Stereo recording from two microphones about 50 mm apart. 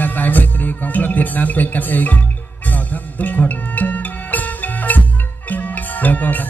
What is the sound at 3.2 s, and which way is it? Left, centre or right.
Music, left.